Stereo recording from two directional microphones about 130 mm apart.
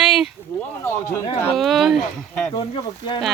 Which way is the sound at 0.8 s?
15° left (ahead or behind).